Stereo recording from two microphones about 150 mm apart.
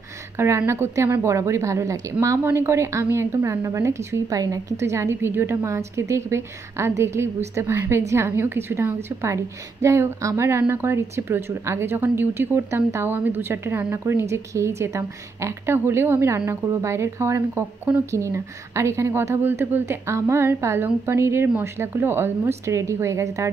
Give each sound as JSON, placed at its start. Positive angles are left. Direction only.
{"t": 0.4, "sound": "a woman's voice", "side_deg": -15}